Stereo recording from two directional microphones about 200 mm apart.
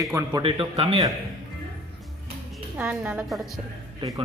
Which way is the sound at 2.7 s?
5° right (ahead or behind).